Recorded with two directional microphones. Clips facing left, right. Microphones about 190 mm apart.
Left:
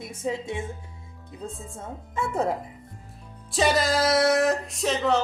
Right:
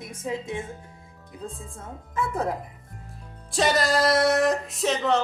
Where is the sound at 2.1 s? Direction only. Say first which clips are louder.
Left 1 dB; 25° left (ahead or behind).